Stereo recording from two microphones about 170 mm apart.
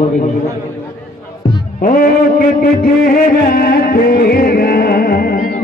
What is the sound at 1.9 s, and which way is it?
Music, 55° left (ahead or behind).